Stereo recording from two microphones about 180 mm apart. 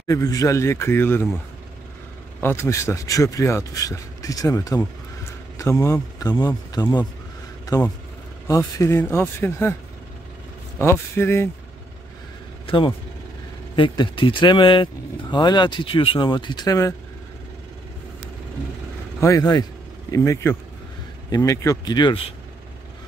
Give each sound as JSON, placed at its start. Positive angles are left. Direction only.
{"t": 0.0, "sound": "speech", "side_deg": 20}
{"t": 2.4, "sound": "speech", "side_deg": 15}
{"t": 8.5, "sound": "speech", "side_deg": 15}
{"t": 10.8, "sound": "speech", "side_deg": 15}
{"t": 12.6, "sound": "speech", "side_deg": 30}
{"t": 19.1, "sound": "speech", "side_deg": 15}